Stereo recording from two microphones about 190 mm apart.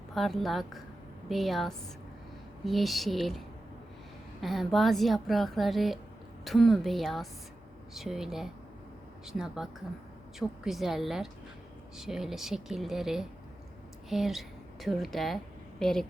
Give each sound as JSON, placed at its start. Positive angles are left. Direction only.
{"t": 0.1, "sound": "a woman's voice", "side_deg": 0}